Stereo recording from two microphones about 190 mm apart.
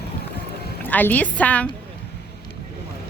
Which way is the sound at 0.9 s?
10° left (ahead or behind).